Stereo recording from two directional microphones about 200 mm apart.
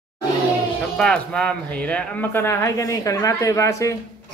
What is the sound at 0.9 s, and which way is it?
Speech, 5° left (ahead or behind).